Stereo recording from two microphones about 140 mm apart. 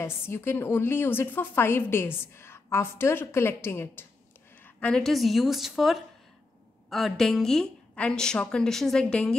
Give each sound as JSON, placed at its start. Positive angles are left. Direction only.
{"t": 0.0, "sound": "a woman's voice", "side_deg": 15}